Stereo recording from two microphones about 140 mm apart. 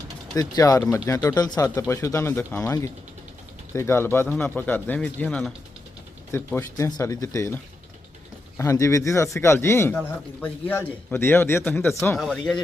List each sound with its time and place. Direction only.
0.3 s a man's voice: 25° left (ahead or behind); by 5.5 s 5° left (ahead or behind)
6.3 s a man's voice: 15° left (ahead or behind)
12.1 s speech: centre (ahead or behind)